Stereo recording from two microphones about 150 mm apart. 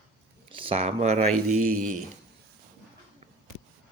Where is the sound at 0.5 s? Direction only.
35° right (ahead or behind).